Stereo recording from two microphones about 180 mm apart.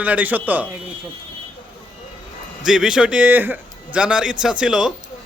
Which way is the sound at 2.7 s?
5° right (ahead or behind).